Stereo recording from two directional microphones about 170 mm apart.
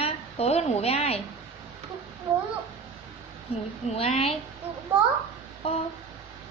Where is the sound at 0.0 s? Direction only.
40° left (ahead or behind).